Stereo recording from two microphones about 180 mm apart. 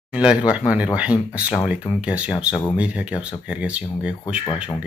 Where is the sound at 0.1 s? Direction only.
5° right (ahead or behind).